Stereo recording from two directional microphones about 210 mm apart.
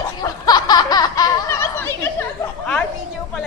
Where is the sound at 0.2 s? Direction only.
20° left (ahead or behind).